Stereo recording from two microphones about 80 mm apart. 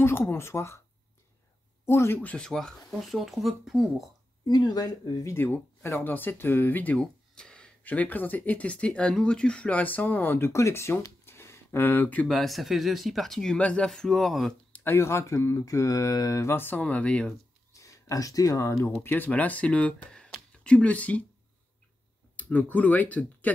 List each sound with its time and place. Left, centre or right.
0.0 s speech: left
1.9 s speech: left
2.2 s speech: centre
4.5 s speech: left
5.2 s speech: left
7.0 s a sound: centre
7.8 s speech: left
10.5 s speech: left
12.3 s speech: centre
14.7 s speech: left
16.5 s speech: left
17.7 s speech: left
19.0 s speech: left
22.4 s speech: left